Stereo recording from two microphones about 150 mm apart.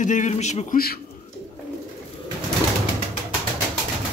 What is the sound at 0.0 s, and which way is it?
Speech, 55° left (ahead or behind).